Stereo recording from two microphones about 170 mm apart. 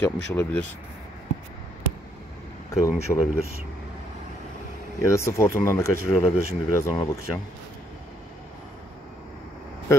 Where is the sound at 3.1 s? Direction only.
20° left (ahead or behind).